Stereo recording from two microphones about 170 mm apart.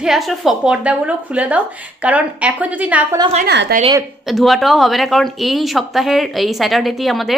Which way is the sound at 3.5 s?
75° right (ahead or behind).